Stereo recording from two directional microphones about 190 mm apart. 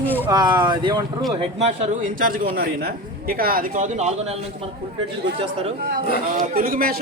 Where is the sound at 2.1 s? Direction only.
45° right (ahead or behind).